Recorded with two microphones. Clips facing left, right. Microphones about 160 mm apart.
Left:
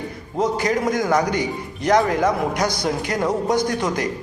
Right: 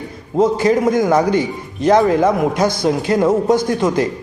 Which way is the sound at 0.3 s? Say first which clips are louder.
Right 7 dB; 25° right (ahead or behind).